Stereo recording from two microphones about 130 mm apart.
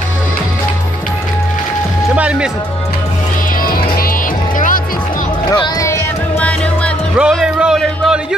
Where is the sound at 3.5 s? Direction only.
90° left.